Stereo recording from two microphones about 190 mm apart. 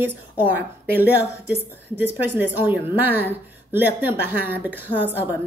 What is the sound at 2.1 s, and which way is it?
A woman's voice, 10° right (ahead or behind).